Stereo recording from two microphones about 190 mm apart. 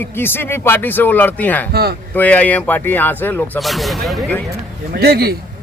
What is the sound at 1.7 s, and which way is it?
Speech, 55° right (ahead or behind).